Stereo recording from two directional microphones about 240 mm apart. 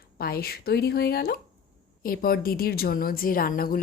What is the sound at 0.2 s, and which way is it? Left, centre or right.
Speech, left.